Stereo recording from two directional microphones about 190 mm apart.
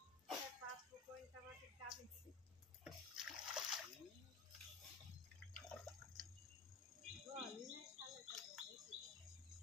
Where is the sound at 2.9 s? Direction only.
5° right (ahead or behind).